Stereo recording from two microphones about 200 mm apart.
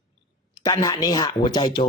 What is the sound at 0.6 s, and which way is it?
Speech, 20° left (ahead or behind).